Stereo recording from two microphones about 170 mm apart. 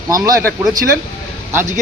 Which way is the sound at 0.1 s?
20° right (ahead or behind).